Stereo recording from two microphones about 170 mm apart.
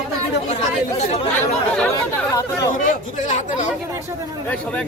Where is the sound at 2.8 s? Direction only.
45° left (ahead or behind).